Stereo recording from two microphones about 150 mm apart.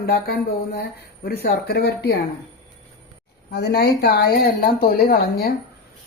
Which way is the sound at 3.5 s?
90° left.